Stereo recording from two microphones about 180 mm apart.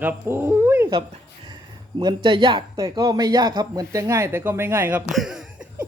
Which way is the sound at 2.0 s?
25° right (ahead or behind).